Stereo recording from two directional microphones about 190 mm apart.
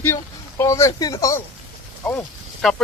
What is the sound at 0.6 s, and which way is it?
Speech, 15° left (ahead or behind).